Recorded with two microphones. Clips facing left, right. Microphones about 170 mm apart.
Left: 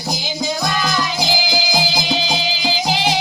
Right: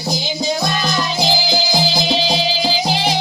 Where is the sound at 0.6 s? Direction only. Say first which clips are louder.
Right 1 dB; 25° right (ahead or behind).